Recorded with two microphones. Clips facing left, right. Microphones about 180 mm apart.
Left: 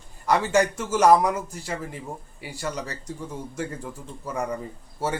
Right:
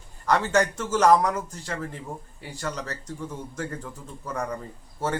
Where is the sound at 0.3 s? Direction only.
10° left (ahead or behind).